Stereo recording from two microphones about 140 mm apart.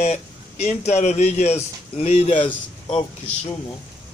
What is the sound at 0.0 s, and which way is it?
Speech, 55° left (ahead or behind).